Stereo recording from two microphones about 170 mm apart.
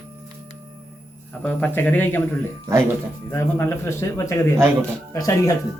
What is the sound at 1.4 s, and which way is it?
Speech, 10° left (ahead or behind).